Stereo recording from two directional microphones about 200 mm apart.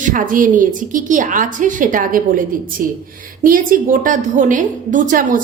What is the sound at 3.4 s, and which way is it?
A woman's voice, 45° right (ahead or behind).